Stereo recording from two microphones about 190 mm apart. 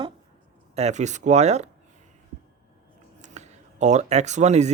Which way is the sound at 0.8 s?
35° right (ahead or behind).